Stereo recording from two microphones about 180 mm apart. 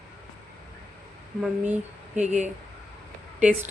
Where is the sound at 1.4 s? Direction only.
5° right (ahead or behind).